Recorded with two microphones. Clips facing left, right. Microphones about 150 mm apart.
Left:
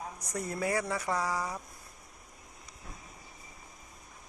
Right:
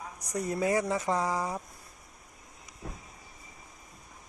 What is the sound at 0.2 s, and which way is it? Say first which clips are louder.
Speech: right 5 dB; 15° right (ahead or behind).